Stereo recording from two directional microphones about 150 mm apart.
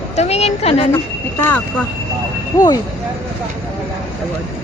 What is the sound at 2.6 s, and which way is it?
Speech, 25° left (ahead or behind).